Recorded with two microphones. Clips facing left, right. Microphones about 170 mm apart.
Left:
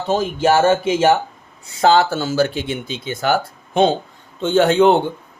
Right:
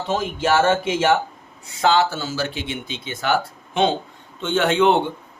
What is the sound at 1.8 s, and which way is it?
Speech, 40° left (ahead or behind).